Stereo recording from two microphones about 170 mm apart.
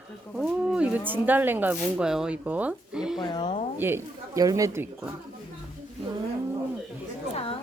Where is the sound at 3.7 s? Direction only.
15° right (ahead or behind).